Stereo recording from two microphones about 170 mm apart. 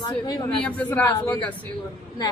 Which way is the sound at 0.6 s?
10° left (ahead or behind).